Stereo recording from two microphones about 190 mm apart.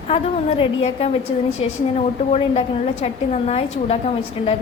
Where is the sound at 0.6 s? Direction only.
30° left (ahead or behind).